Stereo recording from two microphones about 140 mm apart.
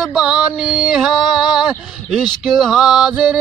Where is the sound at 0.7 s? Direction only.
30° left (ahead or behind).